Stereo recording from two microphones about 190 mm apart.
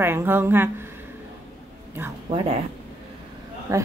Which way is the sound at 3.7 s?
20° right (ahead or behind).